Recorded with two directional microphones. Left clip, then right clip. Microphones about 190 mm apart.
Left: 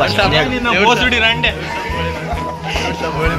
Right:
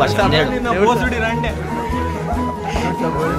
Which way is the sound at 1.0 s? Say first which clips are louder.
Left 6 dB; centre (ahead or behind).